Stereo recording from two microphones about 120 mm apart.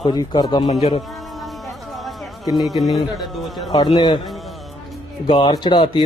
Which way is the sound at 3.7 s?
40° left (ahead or behind).